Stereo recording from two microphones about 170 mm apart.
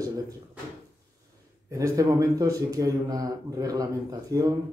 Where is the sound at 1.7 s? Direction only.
20° right (ahead or behind).